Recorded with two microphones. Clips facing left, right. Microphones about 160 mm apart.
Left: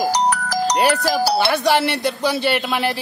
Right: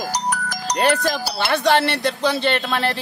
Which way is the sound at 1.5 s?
5° left (ahead or behind).